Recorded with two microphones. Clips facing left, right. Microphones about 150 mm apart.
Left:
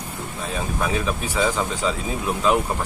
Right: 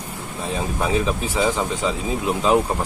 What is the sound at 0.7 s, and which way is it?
Speech, 25° right (ahead or behind).